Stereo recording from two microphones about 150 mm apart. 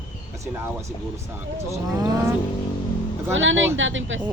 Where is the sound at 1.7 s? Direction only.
20° right (ahead or behind).